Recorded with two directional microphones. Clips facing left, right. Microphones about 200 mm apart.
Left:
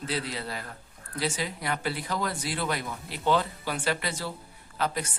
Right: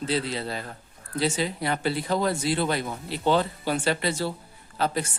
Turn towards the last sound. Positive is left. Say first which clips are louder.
# right 3 dB
turn(degrees=-30)  # may be behind; listen again after turning